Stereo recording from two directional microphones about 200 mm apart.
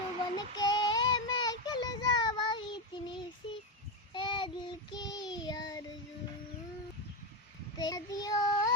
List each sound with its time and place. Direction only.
0.3 s child singing: 20° left (ahead or behind)
7.8 s child singing: 20° left (ahead or behind)